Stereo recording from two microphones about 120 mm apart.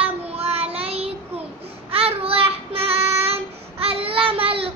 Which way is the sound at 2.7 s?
55° right (ahead or behind).